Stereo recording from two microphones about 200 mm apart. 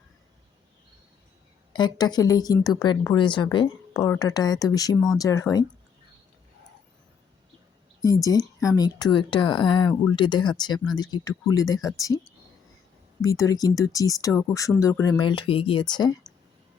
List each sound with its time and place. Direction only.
1.7 s speech: 20° left (ahead or behind)
8.0 s speech: 15° left (ahead or behind)
13.2 s speech: 15° left (ahead or behind)